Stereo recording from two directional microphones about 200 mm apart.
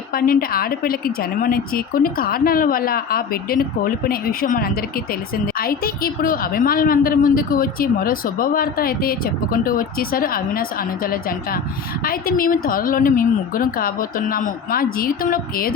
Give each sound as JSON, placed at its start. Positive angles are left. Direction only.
{"t": 0.1, "sound": "a woman's voice", "side_deg": 45}